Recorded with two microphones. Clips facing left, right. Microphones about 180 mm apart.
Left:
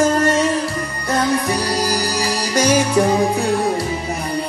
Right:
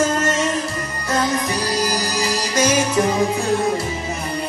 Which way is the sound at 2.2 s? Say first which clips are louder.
Right 1 dB; 35° left (ahead or behind).